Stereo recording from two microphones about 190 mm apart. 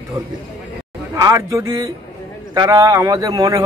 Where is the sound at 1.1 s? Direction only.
15° right (ahead or behind).